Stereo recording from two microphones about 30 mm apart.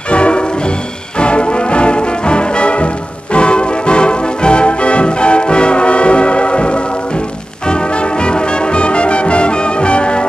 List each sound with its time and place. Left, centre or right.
0.1 s music: left
7.6 s brass instrument: left